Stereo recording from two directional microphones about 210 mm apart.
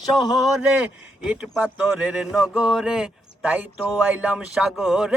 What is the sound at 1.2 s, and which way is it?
Speech, 5° right (ahead or behind).